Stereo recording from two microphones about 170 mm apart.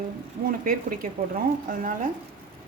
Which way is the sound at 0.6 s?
55° right (ahead or behind).